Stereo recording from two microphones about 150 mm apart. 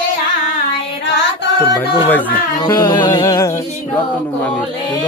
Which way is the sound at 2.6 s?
25° left (ahead or behind).